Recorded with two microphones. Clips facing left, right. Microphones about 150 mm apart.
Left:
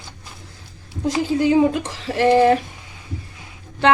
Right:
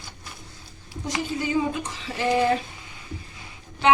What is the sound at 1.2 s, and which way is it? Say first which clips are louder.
Speech: left 9 dB; 70° left (ahead or behind).